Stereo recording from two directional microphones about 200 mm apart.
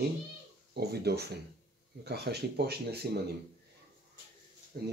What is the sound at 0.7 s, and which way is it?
Speech, 55° right (ahead or behind).